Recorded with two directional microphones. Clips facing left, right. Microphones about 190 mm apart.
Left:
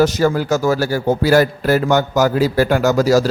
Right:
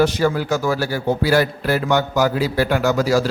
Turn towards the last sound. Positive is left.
turn(degrees=40)  # may be behind; listen again after turning